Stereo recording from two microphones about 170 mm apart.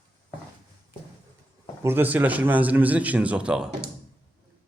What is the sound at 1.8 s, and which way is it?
Speech, 10° right (ahead or behind).